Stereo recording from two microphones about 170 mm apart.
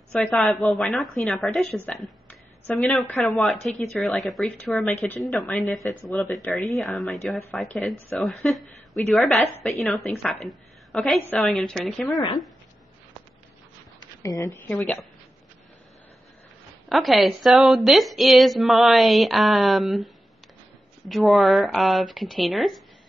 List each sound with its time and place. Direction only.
0.1 s a woman's voice: 5° left (ahead or behind)
13.9 s a sound: 20° left (ahead or behind)
14.7 s a woman's voice: 5° left (ahead or behind)
16.9 s a woman's voice: centre (ahead or behind)
21.2 s a woman's voice: centre (ahead or behind)